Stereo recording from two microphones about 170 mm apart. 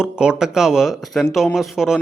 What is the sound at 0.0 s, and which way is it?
Speech, 5° right (ahead or behind).